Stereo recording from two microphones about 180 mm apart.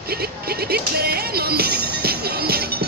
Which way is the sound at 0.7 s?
60° right (ahead or behind).